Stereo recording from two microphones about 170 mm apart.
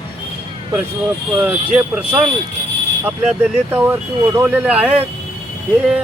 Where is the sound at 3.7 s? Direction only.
10° right (ahead or behind).